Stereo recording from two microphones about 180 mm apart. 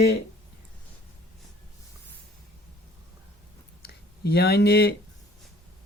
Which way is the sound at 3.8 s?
65° left (ahead or behind).